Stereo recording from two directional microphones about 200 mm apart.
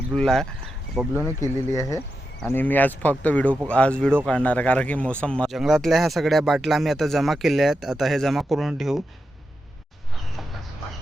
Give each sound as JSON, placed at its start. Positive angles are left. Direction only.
{"t": 0.1, "sound": "speech", "side_deg": 5}
{"t": 1.2, "sound": "speech", "side_deg": 15}